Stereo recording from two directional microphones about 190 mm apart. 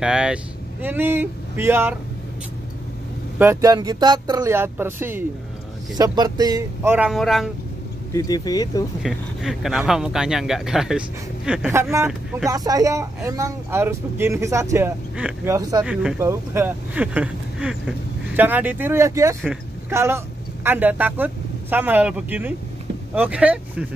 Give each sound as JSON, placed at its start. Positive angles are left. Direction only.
{"t": 0.0, "sound": "speech", "side_deg": -5}
{"t": 3.3, "sound": "speech", "side_deg": -15}
{"t": 7.1, "sound": "speech", "side_deg": 0}
{"t": 8.1, "sound": "speech", "side_deg": 20}
{"t": 9.0, "sound": "speech", "side_deg": 0}
{"t": 15.8, "sound": "speech", "side_deg": -5}